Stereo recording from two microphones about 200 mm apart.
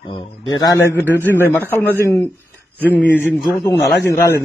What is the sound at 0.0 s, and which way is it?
Speech, 25° left (ahead or behind).